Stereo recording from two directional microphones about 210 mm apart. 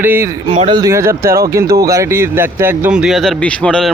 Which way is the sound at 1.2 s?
45° right (ahead or behind).